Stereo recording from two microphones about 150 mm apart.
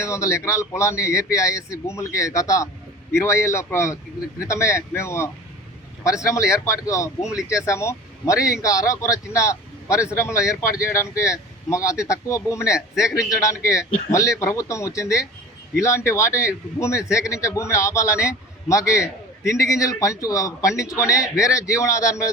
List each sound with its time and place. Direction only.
0.0 s a man's voice: 20° left (ahead or behind)